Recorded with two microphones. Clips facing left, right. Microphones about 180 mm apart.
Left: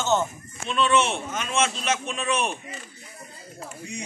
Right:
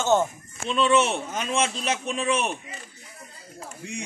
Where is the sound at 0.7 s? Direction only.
30° right (ahead or behind).